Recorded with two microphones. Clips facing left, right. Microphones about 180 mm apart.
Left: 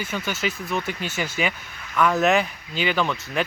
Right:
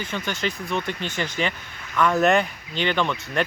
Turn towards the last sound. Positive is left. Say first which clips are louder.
# even
turn(degrees=5)  # may be behind; listen again after turning